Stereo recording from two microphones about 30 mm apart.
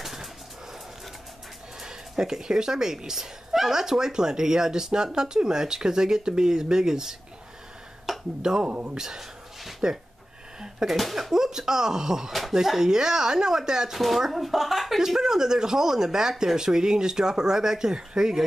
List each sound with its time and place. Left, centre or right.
0.0 s pigeon: centre
1.8 s speech: right
8.4 s speech: right
8.6 s speech: right
8.9 s speech: right
12.3 s speech: centre
12.5 s speech: centre
13.9 s speech: centre
15.0 s speech: centre